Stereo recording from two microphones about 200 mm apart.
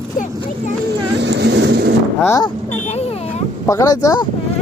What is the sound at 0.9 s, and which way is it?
Speech, 60° right (ahead or behind).